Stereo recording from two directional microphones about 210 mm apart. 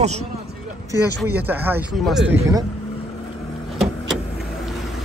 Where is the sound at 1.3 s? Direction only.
10° right (ahead or behind).